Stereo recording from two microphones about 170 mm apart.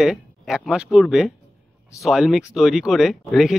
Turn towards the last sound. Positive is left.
turn(degrees=0)  # may be behind; listen again after turning